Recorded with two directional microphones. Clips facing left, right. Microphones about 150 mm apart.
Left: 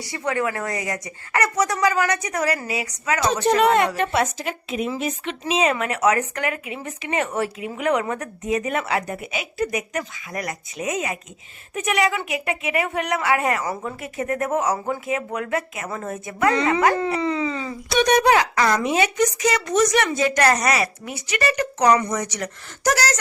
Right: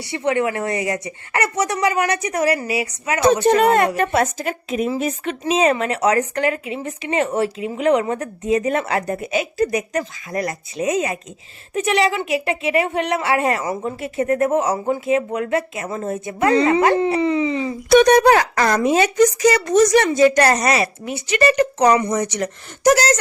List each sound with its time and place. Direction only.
0.0 s a woman's voice: 25° right (ahead or behind)
3.4 s speech: 50° right (ahead or behind)
5.7 s a woman's voice: 30° right (ahead or behind)
17.8 s a woman's voice: 50° right (ahead or behind); by 23.1 s 25° right (ahead or behind)